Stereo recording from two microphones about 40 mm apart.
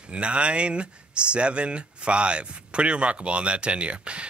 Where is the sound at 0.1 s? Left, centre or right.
Right.